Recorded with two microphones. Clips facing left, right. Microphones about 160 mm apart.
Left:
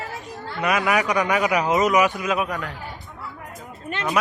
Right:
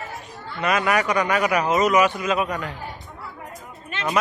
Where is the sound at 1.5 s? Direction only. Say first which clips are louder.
Right 1 dB; 15° left (ahead or behind).